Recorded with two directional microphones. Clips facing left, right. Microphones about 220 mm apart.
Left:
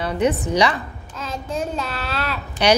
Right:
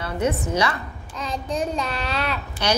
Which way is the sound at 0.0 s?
15° left (ahead or behind).